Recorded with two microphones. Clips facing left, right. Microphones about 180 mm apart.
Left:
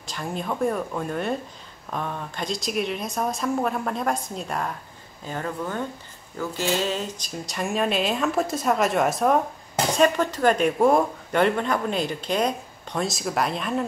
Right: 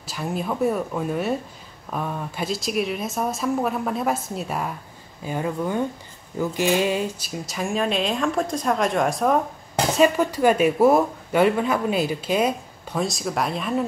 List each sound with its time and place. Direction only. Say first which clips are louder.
0.0 s speech: right 3 dB; 5° right (ahead or behind)